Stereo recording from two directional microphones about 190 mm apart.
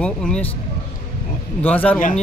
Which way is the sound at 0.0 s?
5° left (ahead or behind).